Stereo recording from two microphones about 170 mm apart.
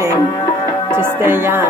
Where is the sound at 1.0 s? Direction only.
15° right (ahead or behind).